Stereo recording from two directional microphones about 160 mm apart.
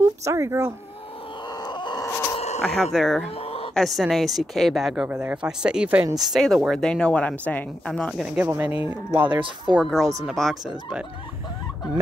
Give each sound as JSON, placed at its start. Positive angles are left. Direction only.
{"t": 0.0, "sound": "speech", "side_deg": -20}
{"t": 1.5, "sound": "a sound", "side_deg": 25}
{"t": 2.3, "sound": "a sound", "side_deg": 45}
{"t": 2.6, "sound": "speech", "side_deg": 0}
{"t": 3.3, "sound": "a sound", "side_deg": 40}
{"t": 3.7, "sound": "speech", "side_deg": 0}
{"t": 8.5, "sound": "speech", "side_deg": -15}
{"t": 9.3, "sound": "speech", "side_deg": -30}
{"t": 9.8, "sound": "speech", "side_deg": 0}